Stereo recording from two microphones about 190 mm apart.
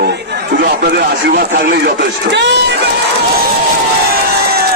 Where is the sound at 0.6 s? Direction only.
55° right (ahead or behind).